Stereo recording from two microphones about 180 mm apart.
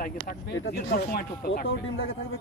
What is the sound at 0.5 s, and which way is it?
Speech, 90° left.